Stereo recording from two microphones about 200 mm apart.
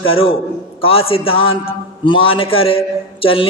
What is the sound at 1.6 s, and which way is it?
Speech, 25° left (ahead or behind).